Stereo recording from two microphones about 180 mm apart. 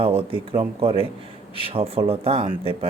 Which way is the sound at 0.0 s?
30° right (ahead or behind).